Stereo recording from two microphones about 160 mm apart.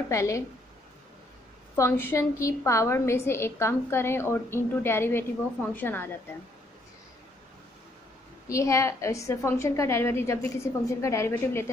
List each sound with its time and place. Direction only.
0.1 s a woman's voice: 20° left (ahead or behind)
1.8 s a woman's voice: 15° left (ahead or behind)
8.5 s a woman's voice: 20° left (ahead or behind)